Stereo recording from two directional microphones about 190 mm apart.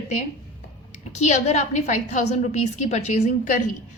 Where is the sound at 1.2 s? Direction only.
35° left (ahead or behind).